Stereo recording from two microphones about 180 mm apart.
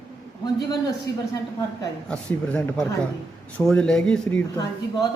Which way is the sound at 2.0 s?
5° left (ahead or behind).